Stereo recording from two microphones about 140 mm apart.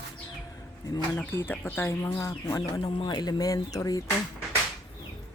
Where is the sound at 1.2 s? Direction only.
15° left (ahead or behind).